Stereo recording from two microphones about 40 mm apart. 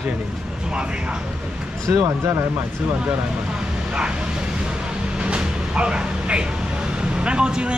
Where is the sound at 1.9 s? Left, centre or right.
Right.